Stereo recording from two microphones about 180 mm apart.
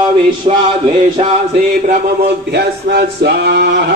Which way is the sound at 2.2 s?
65° right (ahead or behind).